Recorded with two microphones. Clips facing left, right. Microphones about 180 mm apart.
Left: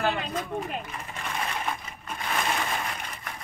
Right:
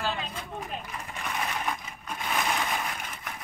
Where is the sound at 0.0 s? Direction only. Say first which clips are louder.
Left 5 dB; 65° left (ahead or behind).